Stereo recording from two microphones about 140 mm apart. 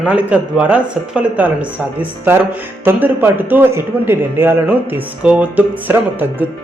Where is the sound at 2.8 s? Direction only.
15° right (ahead or behind).